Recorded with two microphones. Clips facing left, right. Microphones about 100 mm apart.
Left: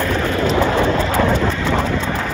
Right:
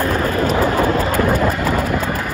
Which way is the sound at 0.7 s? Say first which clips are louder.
Even; 45° right (ahead or behind).